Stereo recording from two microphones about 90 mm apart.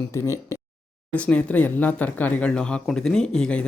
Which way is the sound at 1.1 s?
15° left (ahead or behind).